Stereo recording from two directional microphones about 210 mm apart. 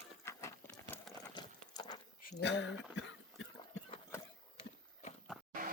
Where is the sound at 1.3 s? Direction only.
20° left (ahead or behind).